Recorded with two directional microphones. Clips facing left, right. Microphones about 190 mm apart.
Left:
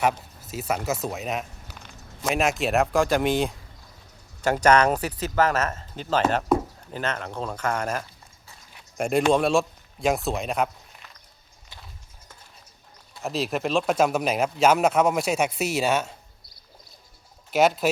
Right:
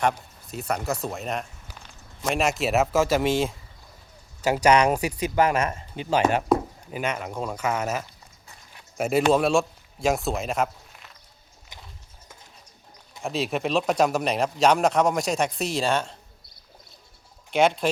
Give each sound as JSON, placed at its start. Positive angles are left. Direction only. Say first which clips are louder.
{"t": 0.0, "sound": "a man's voice", "louder": "left 1 dB", "side_deg": 5}
{"t": 11.7, "sound": "clip-clop", "louder": "right 1 dB", "side_deg": -15}
{"t": 13.2, "sound": "speech", "louder": "even", "side_deg": 0}
{"t": 17.5, "sound": "speech", "louder": "left 1 dB", "side_deg": 5}